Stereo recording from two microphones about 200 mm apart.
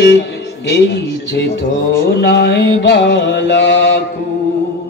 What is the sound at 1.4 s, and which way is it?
Music, 55° left (ahead or behind).